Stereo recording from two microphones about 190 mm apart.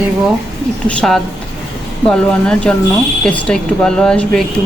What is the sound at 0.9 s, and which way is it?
Speech, 5° left (ahead or behind).